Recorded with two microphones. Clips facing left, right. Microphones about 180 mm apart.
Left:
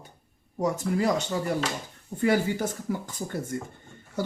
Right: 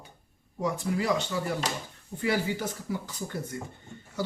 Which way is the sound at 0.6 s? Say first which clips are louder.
Left 3 dB; 45° left (ahead or behind).